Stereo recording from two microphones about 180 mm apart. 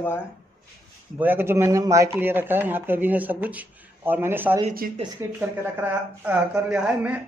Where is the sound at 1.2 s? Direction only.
10° right (ahead or behind).